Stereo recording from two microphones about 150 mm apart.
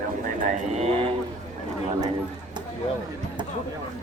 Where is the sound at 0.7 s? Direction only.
40° right (ahead or behind).